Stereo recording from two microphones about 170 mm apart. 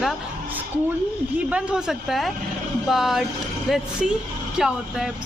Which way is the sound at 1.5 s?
5° right (ahead or behind).